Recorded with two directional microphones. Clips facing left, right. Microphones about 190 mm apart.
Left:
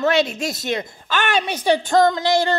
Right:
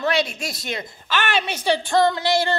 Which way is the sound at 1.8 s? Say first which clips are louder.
Left 1 dB; 45° left (ahead or behind).